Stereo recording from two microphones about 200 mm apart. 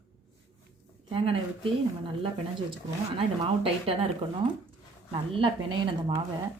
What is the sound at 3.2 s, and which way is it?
Speech, 30° right (ahead or behind).